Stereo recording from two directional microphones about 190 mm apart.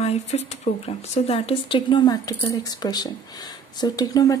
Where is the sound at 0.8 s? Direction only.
35° left (ahead or behind).